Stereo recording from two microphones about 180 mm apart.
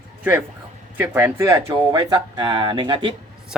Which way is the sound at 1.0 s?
10° right (ahead or behind).